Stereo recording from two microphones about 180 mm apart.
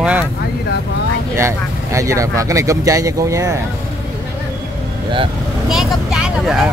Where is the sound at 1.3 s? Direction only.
15° right (ahead or behind).